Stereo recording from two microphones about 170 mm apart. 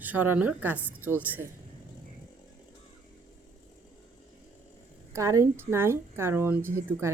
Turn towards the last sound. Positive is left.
turn(degrees=-15)  # may be behind; listen again after turning